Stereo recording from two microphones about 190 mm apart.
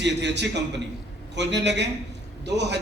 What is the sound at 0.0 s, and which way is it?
A man's voice, 65° right (ahead or behind).